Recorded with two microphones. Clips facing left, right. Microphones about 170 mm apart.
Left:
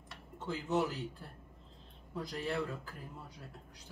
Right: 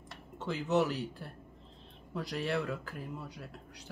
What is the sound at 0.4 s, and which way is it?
Speech, 75° right (ahead or behind).